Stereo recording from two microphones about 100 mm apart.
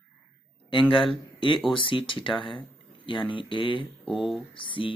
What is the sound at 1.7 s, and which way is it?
Speech, 60° left (ahead or behind).